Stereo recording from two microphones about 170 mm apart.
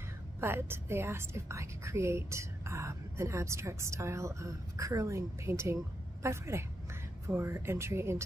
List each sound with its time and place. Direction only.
0.4 s a woman's voice: 15° right (ahead or behind)